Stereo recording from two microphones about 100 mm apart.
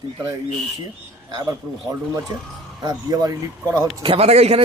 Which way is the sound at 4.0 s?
75° right (ahead or behind).